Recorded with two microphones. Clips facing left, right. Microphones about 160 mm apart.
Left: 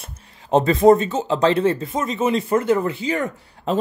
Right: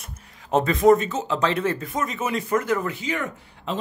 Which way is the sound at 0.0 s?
30° left (ahead or behind).